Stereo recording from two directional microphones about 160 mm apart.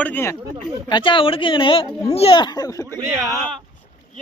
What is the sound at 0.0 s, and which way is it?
Speech, 15° left (ahead or behind).